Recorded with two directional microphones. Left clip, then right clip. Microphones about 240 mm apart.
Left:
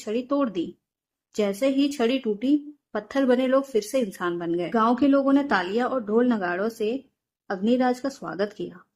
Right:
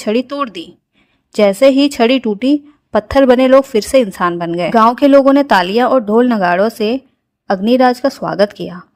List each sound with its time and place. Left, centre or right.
0.0 s a woman's voice: right